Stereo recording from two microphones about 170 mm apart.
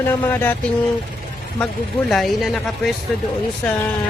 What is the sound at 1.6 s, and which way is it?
Speech, centre (ahead or behind).